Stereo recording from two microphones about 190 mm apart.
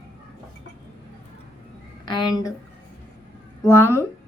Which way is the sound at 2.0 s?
25° left (ahead or behind).